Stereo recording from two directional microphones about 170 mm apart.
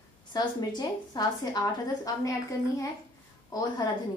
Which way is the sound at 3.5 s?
25° left (ahead or behind).